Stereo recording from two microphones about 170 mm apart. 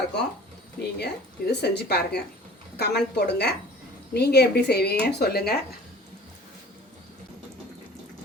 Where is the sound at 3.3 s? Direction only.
75° left (ahead or behind).